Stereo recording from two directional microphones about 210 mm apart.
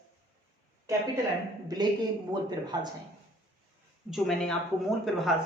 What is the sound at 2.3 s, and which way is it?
Speech, 20° right (ahead or behind).